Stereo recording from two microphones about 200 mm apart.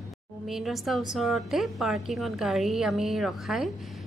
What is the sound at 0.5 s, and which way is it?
A woman's voice, centre (ahead or behind).